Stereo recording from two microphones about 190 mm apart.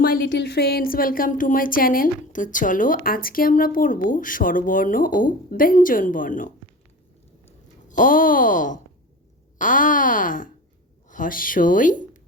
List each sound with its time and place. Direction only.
0.0 s speech: 50° left (ahead or behind)
0.3 s speech: 60° left (ahead or behind); by 6.5 s 45° left (ahead or behind)
7.9 s speech: 45° left (ahead or behind)